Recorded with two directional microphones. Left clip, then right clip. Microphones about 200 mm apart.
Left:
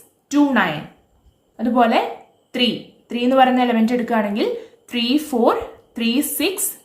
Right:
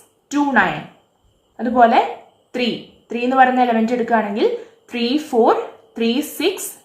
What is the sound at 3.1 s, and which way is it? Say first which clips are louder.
A woman's voice: right 1 dB; 75° left (ahead or behind).